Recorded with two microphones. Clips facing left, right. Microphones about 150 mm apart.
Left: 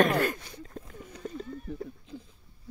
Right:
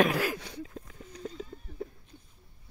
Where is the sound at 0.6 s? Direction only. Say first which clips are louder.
Right 1 dB; centre (ahead or behind).